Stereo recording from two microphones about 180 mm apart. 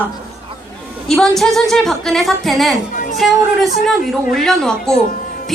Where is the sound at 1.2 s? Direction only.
Centre (ahead or behind).